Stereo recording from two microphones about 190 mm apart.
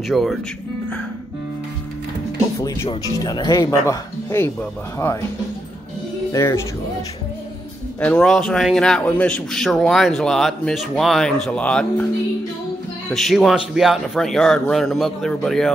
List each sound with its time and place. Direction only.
0.1 s a man's voice: centre (ahead or behind)
3.2 s speech: 20° left (ahead or behind)
6.3 s speech: 15° left (ahead or behind)
8.0 s a man's voice: 5° left (ahead or behind)
13.1 s a man's voice: centre (ahead or behind)